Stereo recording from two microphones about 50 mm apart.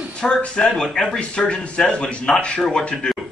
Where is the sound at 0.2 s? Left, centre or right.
Centre.